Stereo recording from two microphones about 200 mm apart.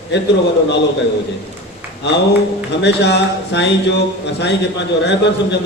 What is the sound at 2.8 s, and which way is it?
A man's voice, 60° left (ahead or behind).